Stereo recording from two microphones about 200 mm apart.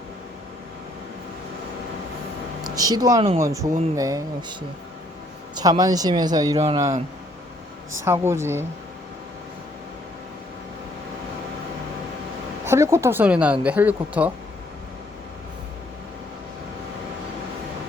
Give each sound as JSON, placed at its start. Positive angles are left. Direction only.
{"t": 2.6, "sound": "speech", "side_deg": -20}
{"t": 5.5, "sound": "speech", "side_deg": -20}
{"t": 8.0, "sound": "speech", "side_deg": -10}
{"t": 12.6, "sound": "speech", "side_deg": -15}